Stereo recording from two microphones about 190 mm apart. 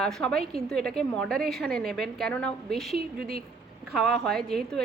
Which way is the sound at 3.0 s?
55° right (ahead or behind).